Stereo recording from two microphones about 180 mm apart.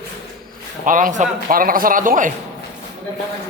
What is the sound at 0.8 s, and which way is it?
A man's voice, 45° right (ahead or behind).